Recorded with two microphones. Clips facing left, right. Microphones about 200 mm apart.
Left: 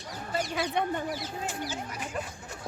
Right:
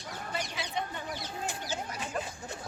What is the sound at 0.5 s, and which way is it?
Speech, 60° left (ahead or behind).